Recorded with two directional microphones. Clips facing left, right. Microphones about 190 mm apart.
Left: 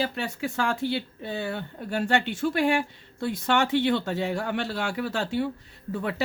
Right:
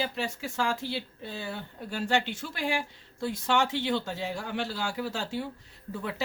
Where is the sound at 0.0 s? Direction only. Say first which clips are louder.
Left 4 dB; 60° left (ahead or behind).